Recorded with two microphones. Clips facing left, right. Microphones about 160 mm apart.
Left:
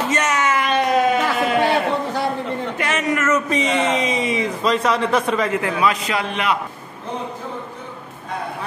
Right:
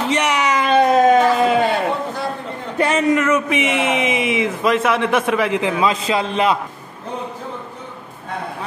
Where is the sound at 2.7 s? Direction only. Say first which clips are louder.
Right 8 dB; 30° right (ahead or behind).